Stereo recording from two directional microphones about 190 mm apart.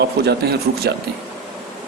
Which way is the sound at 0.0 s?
60° right (ahead or behind).